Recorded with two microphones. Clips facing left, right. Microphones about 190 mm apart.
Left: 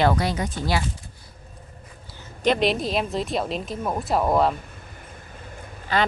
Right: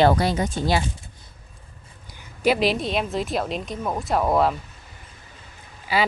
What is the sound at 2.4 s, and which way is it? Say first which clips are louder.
A woman's voice: right 1 dB; 5° right (ahead or behind).